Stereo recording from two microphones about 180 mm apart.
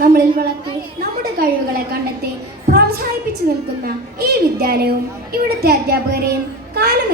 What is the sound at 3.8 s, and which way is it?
A woman's voice, 60° right (ahead or behind).